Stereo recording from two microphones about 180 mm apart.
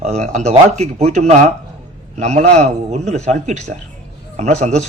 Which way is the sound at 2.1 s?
40° right (ahead or behind).